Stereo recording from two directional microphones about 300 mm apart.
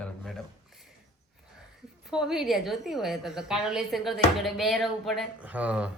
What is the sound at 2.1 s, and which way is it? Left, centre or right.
A woman's voice, centre.